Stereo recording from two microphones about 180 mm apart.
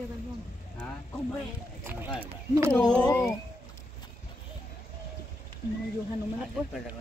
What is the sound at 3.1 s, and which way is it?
Speech, 15° left (ahead or behind).